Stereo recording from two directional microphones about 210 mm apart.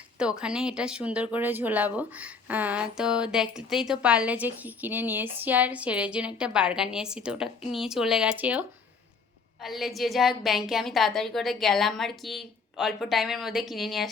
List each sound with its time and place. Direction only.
0.2 s a woman's voice: 5° right (ahead or behind)